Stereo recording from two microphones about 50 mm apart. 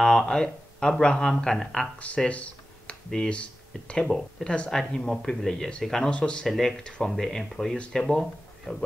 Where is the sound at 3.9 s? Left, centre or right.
Centre.